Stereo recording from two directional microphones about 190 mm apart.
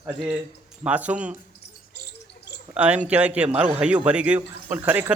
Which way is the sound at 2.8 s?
5° right (ahead or behind).